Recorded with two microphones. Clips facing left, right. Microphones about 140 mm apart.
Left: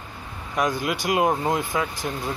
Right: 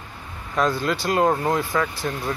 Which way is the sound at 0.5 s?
15° left (ahead or behind).